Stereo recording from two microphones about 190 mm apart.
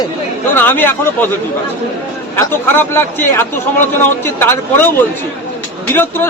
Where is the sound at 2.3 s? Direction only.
10° left (ahead or behind).